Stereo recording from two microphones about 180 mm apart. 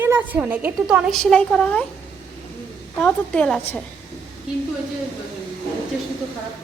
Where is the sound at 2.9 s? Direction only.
5° left (ahead or behind).